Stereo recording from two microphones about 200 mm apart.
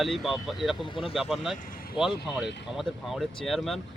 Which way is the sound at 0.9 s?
25° left (ahead or behind).